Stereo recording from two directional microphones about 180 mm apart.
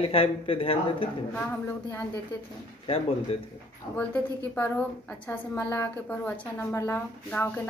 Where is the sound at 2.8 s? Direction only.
30° left (ahead or behind).